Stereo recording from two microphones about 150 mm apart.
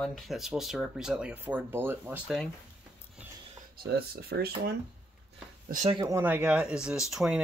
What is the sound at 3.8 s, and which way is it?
Speech, 90° right.